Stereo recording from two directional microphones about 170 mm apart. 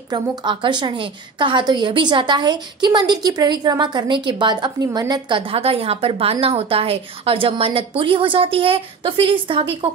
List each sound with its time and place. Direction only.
0.1 s a woman's voice: 25° right (ahead or behind)